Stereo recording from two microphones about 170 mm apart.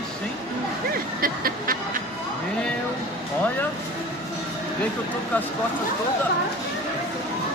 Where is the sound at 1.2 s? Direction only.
60° right (ahead or behind).